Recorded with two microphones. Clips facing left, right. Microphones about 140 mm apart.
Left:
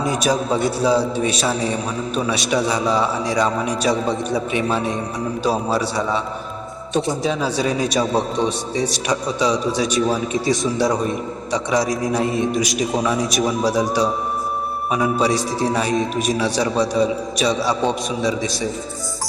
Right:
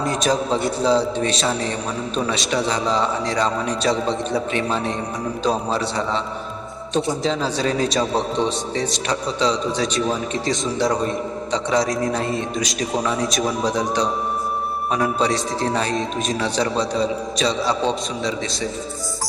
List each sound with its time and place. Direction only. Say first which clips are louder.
0.0 s a man's voice: left 1 dB; 5° left (ahead or behind)
6.9 s a man's voice: left 1 dB; 10° left (ahead or behind)
10.5 s a man's voice: left 3 dB; 20° right (ahead or behind)
12.1 s a man's voice: left 4 dB; 10° left (ahead or behind)